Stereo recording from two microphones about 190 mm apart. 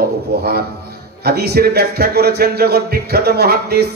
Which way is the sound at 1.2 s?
55° right (ahead or behind).